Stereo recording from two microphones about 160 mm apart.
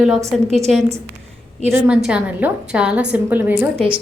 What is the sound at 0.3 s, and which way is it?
A woman's voice, centre (ahead or behind).